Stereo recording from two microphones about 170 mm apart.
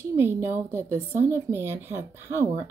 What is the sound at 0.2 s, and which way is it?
Speech, 15° right (ahead or behind).